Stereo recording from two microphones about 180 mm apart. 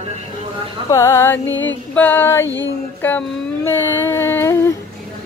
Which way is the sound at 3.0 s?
10° left (ahead or behind).